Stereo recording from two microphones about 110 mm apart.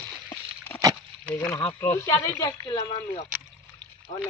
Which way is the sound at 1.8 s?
25° left (ahead or behind).